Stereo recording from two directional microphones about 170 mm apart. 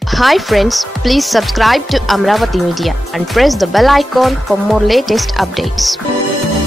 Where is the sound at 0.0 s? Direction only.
Centre (ahead or behind).